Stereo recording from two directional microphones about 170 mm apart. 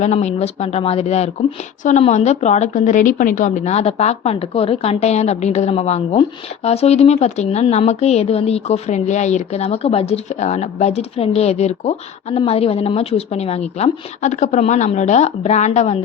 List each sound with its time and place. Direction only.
0.0 s a woman's voice: 40° left (ahead or behind)